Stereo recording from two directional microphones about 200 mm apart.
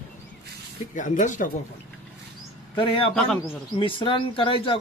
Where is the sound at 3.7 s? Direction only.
25° left (ahead or behind).